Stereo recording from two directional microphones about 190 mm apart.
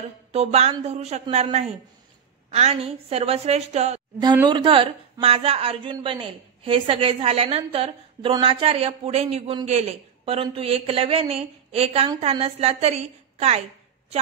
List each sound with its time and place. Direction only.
0.3 s a woman's voice: 35° right (ahead or behind)